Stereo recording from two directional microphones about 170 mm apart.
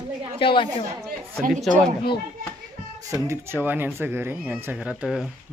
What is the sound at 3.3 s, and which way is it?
Speech, 15° right (ahead or behind).